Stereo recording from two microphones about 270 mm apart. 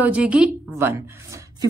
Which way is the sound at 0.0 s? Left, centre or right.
Centre.